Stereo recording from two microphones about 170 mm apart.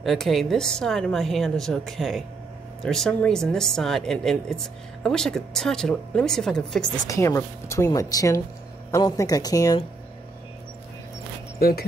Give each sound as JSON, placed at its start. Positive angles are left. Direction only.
{"t": 0.0, "sound": "speech", "side_deg": 0}
{"t": 7.1, "sound": "a woman's voice", "side_deg": 15}